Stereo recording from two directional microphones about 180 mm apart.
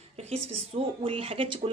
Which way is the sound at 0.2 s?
35° right (ahead or behind).